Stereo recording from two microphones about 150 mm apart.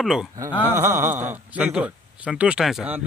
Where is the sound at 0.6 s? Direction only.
15° right (ahead or behind).